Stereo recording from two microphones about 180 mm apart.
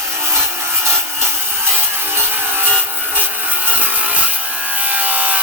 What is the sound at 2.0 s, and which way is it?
Wood, 10° right (ahead or behind).